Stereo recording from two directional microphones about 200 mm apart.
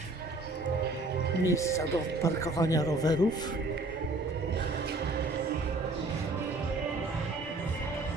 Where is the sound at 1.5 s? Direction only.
15° left (ahead or behind).